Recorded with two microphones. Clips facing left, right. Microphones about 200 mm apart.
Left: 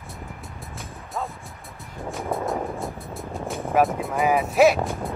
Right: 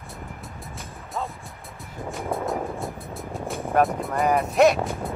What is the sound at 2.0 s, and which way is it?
Music, centre (ahead or behind).